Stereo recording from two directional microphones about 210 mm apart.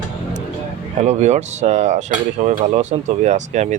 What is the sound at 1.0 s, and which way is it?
Cutlery, 35° right (ahead or behind).